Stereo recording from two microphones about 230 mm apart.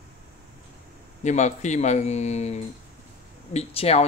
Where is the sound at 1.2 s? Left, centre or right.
Left.